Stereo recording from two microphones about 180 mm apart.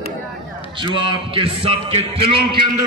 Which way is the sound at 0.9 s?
30° right (ahead or behind).